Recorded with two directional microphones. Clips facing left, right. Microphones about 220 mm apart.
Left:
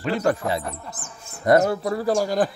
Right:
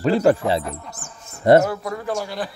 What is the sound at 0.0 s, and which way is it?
Speech, 30° right (ahead or behind).